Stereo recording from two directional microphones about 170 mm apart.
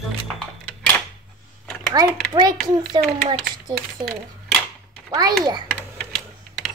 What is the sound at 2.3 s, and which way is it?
A child's voice, 25° right (ahead or behind).